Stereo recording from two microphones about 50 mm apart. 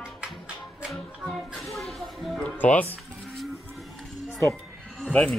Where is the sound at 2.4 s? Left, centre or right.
Left.